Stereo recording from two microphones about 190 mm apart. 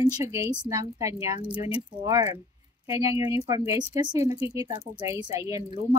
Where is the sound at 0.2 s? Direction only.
15° right (ahead or behind).